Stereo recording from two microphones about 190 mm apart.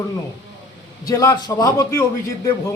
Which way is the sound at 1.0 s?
20° left (ahead or behind).